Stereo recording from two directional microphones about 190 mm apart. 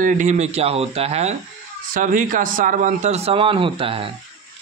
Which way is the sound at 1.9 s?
45° right (ahead or behind).